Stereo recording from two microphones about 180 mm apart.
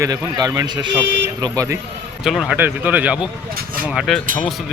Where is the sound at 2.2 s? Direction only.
Centre (ahead or behind).